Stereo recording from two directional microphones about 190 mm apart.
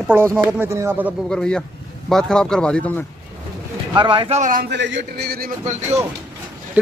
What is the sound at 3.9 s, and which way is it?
Speech, 25° right (ahead or behind).